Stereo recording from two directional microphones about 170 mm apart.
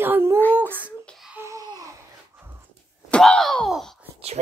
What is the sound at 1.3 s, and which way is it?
Babbling, 15° right (ahead or behind).